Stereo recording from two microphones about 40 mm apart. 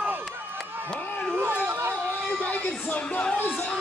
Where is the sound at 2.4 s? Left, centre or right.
Left.